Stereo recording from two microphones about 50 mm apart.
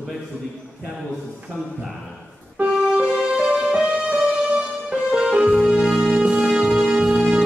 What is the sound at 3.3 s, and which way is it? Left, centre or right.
Music, centre.